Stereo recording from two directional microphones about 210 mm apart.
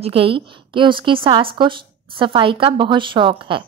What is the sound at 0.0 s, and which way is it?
A woman's voice, 25° right (ahead or behind).